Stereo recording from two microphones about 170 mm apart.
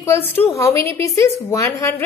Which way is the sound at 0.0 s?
15° left (ahead or behind).